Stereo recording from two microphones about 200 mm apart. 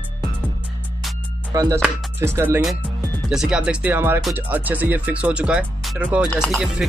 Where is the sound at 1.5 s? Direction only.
15° right (ahead or behind).